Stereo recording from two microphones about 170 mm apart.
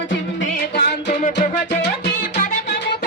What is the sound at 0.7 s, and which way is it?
Music, 65° left (ahead or behind).